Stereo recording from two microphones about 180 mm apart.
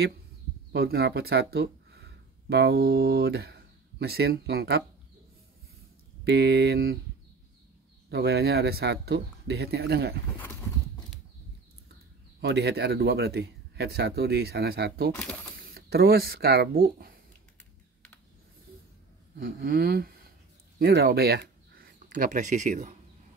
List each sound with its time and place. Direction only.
0.7 s speech: 65° right (ahead or behind)
6.2 s speech: 65° right (ahead or behind)
8.1 s speech: 65° right (ahead or behind)
12.4 s speech: 65° right (ahead or behind)
19.4 s speech: 50° right (ahead or behind)